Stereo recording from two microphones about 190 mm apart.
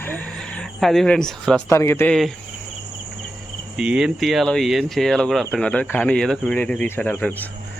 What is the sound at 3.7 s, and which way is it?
Speech, 5° right (ahead or behind).